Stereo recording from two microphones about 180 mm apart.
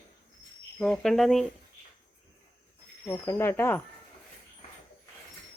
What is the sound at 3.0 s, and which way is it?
Speech, 15° left (ahead or behind).